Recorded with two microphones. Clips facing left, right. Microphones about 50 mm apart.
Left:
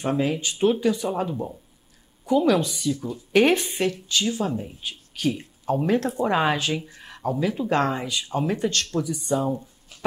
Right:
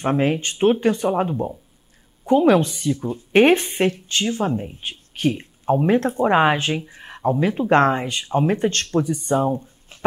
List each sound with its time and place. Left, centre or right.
0.0 s a woman's voice: right
1.3 s speech: right
2.2 s a woman's voice: right